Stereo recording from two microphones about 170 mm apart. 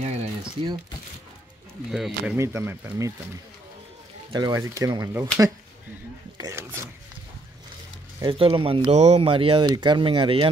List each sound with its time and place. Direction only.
0.0 s a sound: 40° right (ahead or behind)
1.9 s speech: centre (ahead or behind)
2.3 s speech: 15° right (ahead or behind)
4.3 s speech: 25° right (ahead or behind)
6.3 s speech: 20° right (ahead or behind)
8.2 s speech: 30° right (ahead or behind)